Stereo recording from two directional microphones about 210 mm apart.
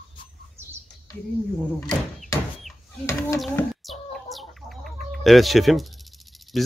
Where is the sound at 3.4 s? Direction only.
Centre (ahead or behind).